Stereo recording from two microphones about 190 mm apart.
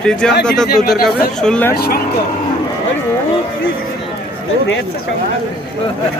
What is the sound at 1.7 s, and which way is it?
Speech, 55° left (ahead or behind).